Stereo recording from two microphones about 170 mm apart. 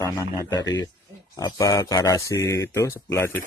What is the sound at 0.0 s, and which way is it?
Speech, 20° left (ahead or behind).